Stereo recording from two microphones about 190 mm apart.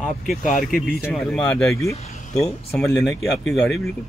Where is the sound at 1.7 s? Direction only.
15° left (ahead or behind).